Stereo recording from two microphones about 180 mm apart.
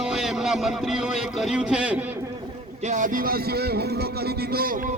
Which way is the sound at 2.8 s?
45° right (ahead or behind).